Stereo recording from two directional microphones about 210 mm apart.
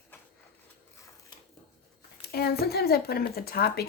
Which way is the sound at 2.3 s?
50° left (ahead or behind).